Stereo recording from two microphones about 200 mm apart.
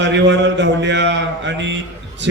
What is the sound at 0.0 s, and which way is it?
A man's voice, 60° right (ahead or behind).